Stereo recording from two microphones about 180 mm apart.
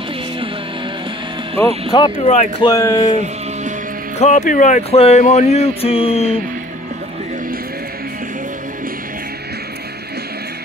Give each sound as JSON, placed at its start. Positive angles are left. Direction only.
{"t": 1.9, "sound": "speech", "side_deg": 25}
{"t": 2.6, "sound": "speech", "side_deg": 15}
{"t": 4.2, "sound": "speech", "side_deg": 40}